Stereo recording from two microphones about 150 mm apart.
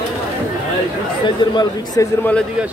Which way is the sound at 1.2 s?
30° left (ahead or behind).